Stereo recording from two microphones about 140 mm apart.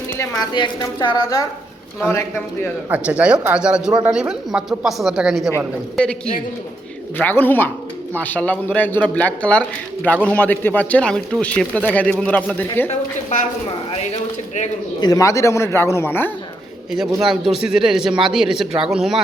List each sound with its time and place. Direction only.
0.2 s a woman's voice: 30° left (ahead or behind)
2.9 s speech: 10° right (ahead or behind)
7.2 s a man's voice: 15° left (ahead or behind)
15.0 s a woman's voice: 25° left (ahead or behind)
17.2 s speech: centre (ahead or behind)